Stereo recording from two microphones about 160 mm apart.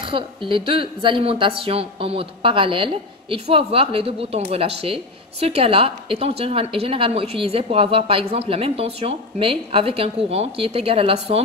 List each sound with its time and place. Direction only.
0.0 s speech: 35° right (ahead or behind)